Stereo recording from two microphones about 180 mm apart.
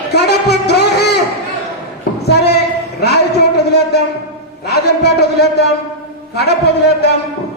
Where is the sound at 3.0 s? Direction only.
65° left (ahead or behind).